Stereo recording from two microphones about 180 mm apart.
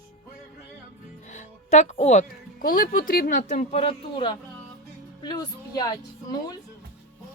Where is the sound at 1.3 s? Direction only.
40° left (ahead or behind); by 6.0 s 20° left (ahead or behind).